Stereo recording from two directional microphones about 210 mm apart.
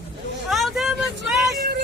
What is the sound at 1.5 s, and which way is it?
Vehicle, 45° right (ahead or behind).